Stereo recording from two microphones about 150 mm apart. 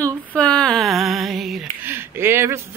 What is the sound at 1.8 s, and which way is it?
Female singing, 15° right (ahead or behind).